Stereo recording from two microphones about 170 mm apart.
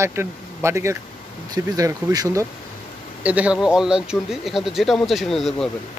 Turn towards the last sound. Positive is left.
turn(degrees=0)  # may be behind; listen again after turning